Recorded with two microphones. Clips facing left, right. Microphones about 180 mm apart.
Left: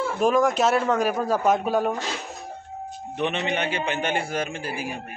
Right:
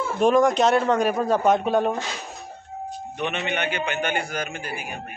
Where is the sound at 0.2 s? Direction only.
Centre (ahead or behind).